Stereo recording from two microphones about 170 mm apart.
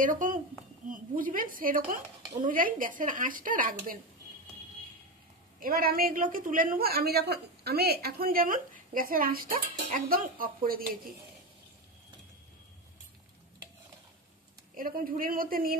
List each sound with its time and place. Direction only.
0.0 s a woman's voice: 50° right (ahead or behind)
5.6 s a woman's voice: 60° right (ahead or behind)
14.8 s a woman's voice: 55° right (ahead or behind)